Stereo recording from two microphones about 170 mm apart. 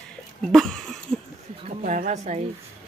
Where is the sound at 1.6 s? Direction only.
45° right (ahead or behind).